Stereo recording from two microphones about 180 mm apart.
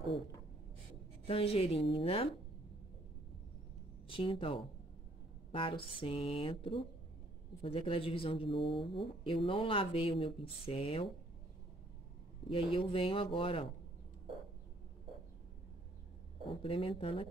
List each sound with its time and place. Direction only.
1.2 s speech: 35° left (ahead or behind)
4.1 s speech: 30° left (ahead or behind)
12.4 s speech: 30° left (ahead or behind)
16.4 s speech: 30° left (ahead or behind)